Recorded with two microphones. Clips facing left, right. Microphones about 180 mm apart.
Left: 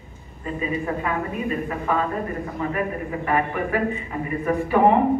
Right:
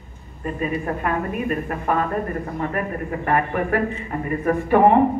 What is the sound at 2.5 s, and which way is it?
A man's voice, 50° right (ahead or behind).